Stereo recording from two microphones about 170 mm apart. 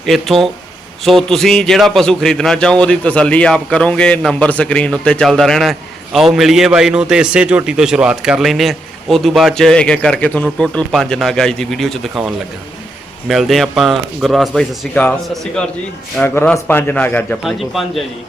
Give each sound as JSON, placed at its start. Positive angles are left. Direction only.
{"t": 0.0, "sound": "a man's voice", "side_deg": 0}